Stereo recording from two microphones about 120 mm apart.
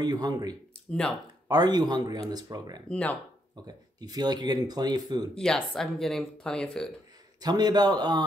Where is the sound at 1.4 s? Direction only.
35° right (ahead or behind).